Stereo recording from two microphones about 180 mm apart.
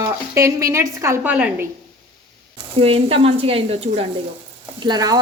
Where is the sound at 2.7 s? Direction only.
35° right (ahead or behind).